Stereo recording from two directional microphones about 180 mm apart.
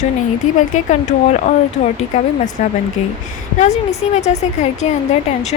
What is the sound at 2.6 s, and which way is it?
Speech, 40° left (ahead or behind).